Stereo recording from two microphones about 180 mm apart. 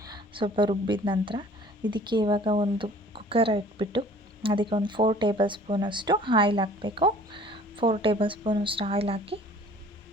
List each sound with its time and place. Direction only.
0.0 s a woman's voice: 25° right (ahead or behind)